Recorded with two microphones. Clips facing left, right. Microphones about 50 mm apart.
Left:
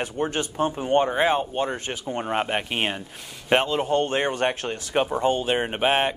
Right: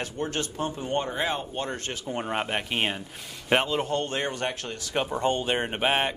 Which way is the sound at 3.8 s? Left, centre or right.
Left.